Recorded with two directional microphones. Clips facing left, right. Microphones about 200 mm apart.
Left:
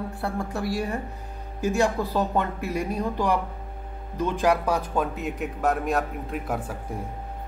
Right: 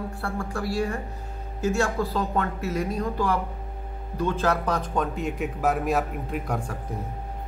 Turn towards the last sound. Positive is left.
turn(degrees=5)  # may be behind; listen again after turning